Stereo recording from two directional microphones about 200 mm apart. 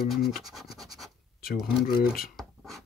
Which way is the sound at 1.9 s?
45° left (ahead or behind).